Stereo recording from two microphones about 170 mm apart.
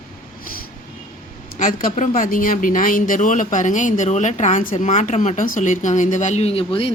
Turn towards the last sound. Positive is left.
turn(degrees=35)  # may be behind; listen again after turning